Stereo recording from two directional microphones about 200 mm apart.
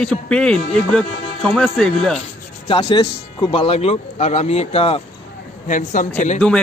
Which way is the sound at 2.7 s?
20° left (ahead or behind).